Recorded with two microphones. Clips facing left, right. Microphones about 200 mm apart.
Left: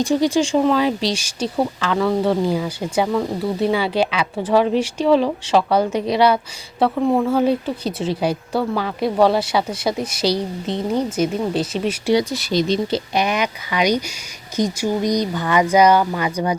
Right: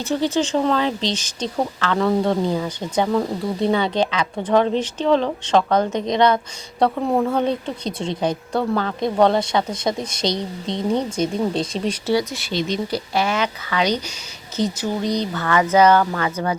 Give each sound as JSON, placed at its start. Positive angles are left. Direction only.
{"t": 0.0, "sound": "speech", "side_deg": 15}
{"t": 12.3, "sound": "speech", "side_deg": 40}
{"t": 13.1, "sound": "speech", "side_deg": 15}